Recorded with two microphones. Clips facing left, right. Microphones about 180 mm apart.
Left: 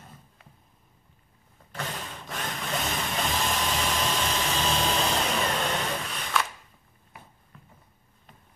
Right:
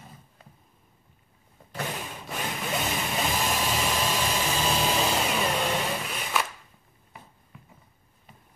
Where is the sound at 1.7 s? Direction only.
10° right (ahead or behind).